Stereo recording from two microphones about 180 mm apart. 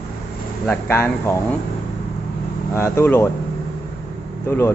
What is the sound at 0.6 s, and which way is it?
Speech, 15° left (ahead or behind).